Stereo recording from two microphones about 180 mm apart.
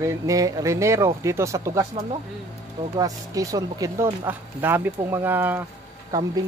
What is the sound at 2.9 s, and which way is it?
Speech, 20° right (ahead or behind).